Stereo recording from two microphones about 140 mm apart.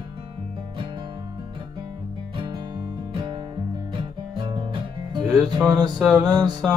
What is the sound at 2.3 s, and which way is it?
Music, 35° right (ahead or behind).